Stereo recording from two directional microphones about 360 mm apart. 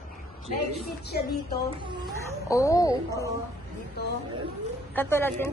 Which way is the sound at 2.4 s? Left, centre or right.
Centre.